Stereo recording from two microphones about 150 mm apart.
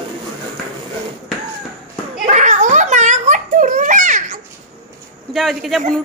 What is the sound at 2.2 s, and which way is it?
Giggle, 55° right (ahead or behind).